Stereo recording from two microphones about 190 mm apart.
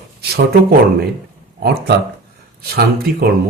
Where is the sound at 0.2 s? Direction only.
55° right (ahead or behind).